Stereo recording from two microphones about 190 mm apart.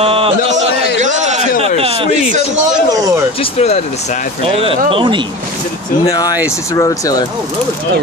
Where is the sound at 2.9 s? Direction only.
15° right (ahead or behind).